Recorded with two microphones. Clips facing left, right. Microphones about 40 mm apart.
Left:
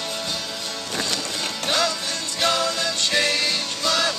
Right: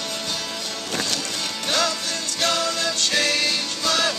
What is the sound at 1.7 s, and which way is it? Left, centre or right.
Music, centre.